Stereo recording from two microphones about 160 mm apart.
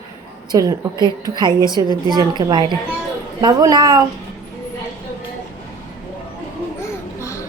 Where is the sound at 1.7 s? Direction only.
25° right (ahead or behind).